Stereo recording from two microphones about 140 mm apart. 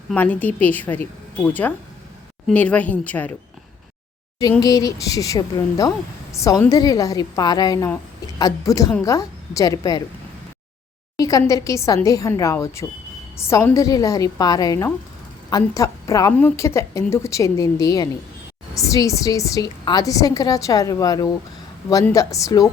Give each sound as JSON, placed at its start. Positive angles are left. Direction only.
{"t": 0.1, "sound": "a woman's voice", "side_deg": 10}
{"t": 4.6, "sound": "a woman's voice", "side_deg": 25}
{"t": 11.2, "sound": "a woman's voice", "side_deg": 25}